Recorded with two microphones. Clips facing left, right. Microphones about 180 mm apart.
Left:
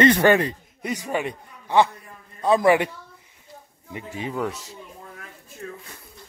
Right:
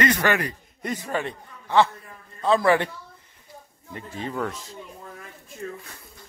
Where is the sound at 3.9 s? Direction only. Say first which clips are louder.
Left 2 dB; 10° left (ahead or behind).